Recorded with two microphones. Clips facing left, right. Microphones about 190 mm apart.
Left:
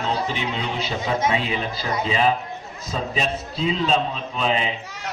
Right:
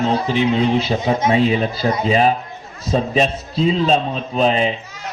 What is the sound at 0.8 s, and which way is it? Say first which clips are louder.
A man's voice: right 6 dB; 40° right (ahead or behind).